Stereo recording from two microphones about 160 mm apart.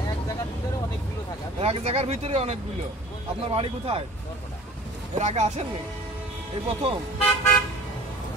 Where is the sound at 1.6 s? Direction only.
40° right (ahead or behind).